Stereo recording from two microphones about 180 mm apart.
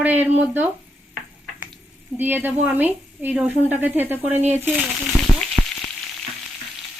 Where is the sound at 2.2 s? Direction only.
10° right (ahead or behind).